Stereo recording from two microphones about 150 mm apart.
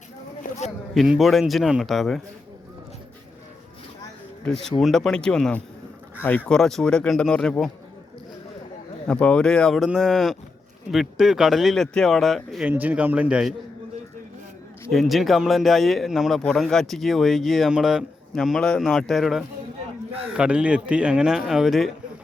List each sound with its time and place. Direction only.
0.4 s a sound: 65° left (ahead or behind)
0.9 s speech: 5° right (ahead or behind)
4.4 s speech: 5° left (ahead or behind)
9.0 s speech: 10° left (ahead or behind)
12.6 s a man's voice: 10° right (ahead or behind)
14.8 s speech: centre (ahead or behind)